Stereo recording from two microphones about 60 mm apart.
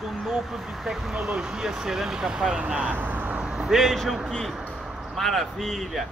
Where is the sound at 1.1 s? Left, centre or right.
Centre; by 3.3 s right.